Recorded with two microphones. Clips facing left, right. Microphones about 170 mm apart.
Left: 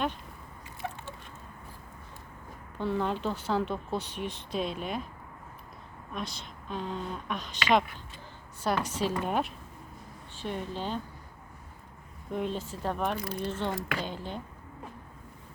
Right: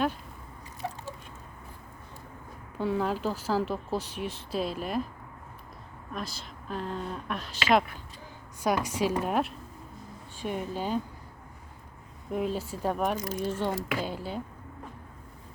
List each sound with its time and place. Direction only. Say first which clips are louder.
2.7 s speech: right 2 dB; 5° right (ahead or behind)
6.1 s a woman's voice: even; centre (ahead or behind)
10.3 s a woman's voice: right 2 dB; 10° right (ahead or behind)
12.3 s a woman's voice: right 2 dB; 5° right (ahead or behind)
13.1 s speech: right 2 dB; 45° right (ahead or behind)
13.4 s a woman's voice: right 3 dB; 10° right (ahead or behind)